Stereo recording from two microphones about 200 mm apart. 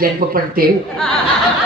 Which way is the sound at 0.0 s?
45° right (ahead or behind).